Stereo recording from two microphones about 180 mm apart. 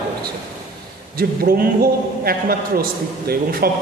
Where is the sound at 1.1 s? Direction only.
55° right (ahead or behind).